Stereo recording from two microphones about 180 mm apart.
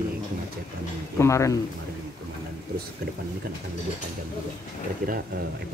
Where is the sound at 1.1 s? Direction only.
15° left (ahead or behind).